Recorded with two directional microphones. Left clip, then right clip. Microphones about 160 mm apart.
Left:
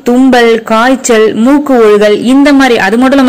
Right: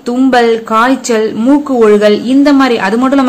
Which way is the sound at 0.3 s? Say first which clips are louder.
Left 1 dB; 30° left (ahead or behind).